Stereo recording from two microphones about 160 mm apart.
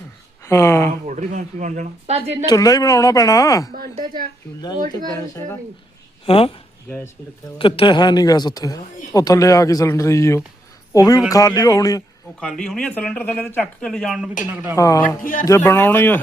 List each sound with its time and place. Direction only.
0.4 s speech: 15° left (ahead or behind)
1.0 s speech: 50° right (ahead or behind)
2.5 s speech: 20° left (ahead or behind)
6.2 s a woman's voice: 35° left (ahead or behind)
7.6 s speech: 30° left (ahead or behind)
12.4 s speech: centre (ahead or behind)
14.5 s a woman's voice: 15° right (ahead or behind)
14.8 s speech: 20° left (ahead or behind)
15.2 s speech: 60° left (ahead or behind)
15.4 s speech: 15° left (ahead or behind)